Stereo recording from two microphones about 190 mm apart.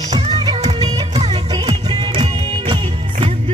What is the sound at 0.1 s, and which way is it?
Music, 20° right (ahead or behind).